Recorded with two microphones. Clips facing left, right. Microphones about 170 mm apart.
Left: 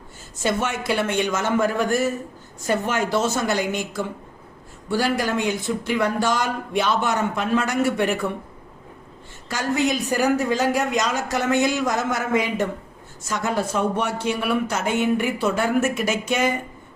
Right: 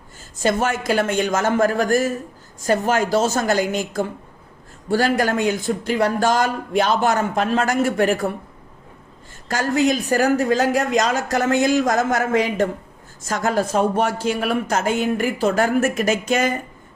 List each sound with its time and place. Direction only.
0.4 s speech: 40° right (ahead or behind)
9.5 s speech: 45° right (ahead or behind)
13.9 s speech: 90° right
14.3 s speech: 40° right (ahead or behind)